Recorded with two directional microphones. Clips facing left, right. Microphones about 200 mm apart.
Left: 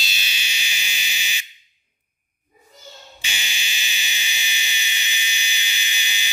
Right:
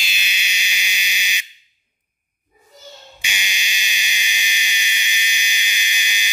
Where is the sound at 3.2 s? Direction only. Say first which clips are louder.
Right 3 dB; 15° right (ahead or behind).